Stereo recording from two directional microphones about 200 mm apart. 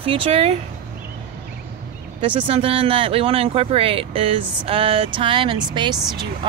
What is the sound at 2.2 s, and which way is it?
Speech, 25° right (ahead or behind).